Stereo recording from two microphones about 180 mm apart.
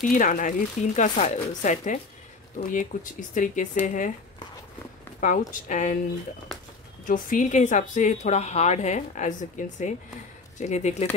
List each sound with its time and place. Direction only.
0.0 s a woman's voice: 45° left (ahead or behind)
5.5 s a woman's voice: 45° left (ahead or behind)
7.1 s a woman's voice: 45° left (ahead or behind)